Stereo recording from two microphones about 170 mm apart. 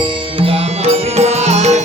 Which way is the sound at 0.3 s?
35° right (ahead or behind).